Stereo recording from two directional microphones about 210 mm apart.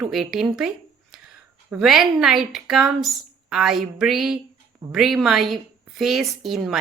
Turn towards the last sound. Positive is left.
turn(degrees=0)  # may be behind; listen again after turning